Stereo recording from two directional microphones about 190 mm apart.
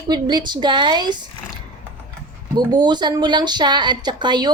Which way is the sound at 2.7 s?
20° right (ahead or behind).